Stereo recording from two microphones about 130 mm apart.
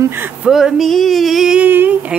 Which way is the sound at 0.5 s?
Centre (ahead or behind).